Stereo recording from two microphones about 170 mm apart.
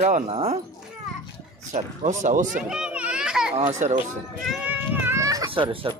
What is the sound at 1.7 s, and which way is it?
Speech, 45° right (ahead or behind).